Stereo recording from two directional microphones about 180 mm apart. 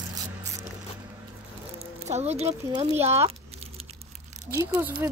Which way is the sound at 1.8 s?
35° right (ahead or behind).